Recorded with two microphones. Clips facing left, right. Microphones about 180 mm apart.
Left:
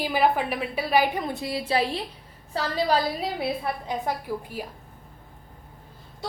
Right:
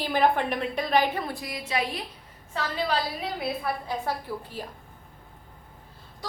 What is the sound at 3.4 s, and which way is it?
A woman's voice, 20° left (ahead or behind).